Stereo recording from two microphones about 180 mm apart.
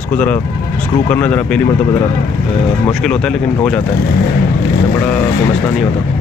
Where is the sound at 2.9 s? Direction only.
5° left (ahead or behind).